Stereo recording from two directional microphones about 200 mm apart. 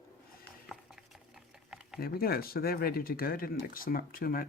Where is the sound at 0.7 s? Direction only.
Centre (ahead or behind).